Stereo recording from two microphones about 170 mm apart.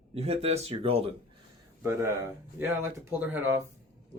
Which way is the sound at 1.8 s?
15° right (ahead or behind).